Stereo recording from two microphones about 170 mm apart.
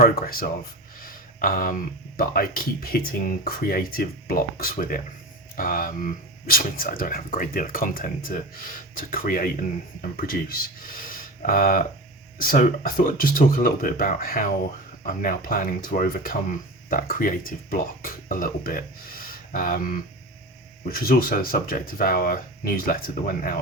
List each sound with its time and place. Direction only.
0.0 s speech: 60° left (ahead or behind)